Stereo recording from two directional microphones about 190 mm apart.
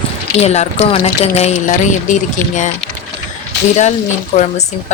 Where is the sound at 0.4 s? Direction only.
35° left (ahead or behind).